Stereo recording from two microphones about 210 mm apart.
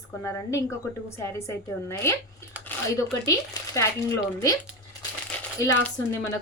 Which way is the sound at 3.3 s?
15° left (ahead or behind).